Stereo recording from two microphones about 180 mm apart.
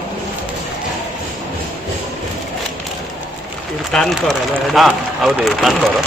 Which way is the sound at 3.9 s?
5° left (ahead or behind).